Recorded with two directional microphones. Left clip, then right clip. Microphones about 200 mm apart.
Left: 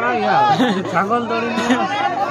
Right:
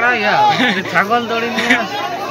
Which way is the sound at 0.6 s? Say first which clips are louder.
Right 3 dB; 30° left (ahead or behind).